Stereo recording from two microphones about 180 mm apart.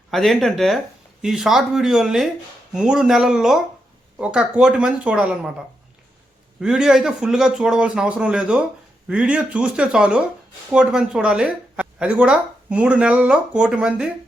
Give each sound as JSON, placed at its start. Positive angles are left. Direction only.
{"t": 0.1, "sound": "speech", "side_deg": 0}
{"t": 6.6, "sound": "speech", "side_deg": -5}